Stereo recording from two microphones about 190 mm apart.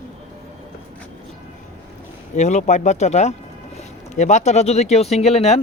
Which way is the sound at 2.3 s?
40° left (ahead or behind).